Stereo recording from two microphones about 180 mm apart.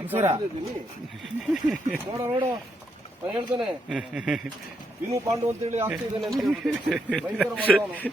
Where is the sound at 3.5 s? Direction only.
5° right (ahead or behind).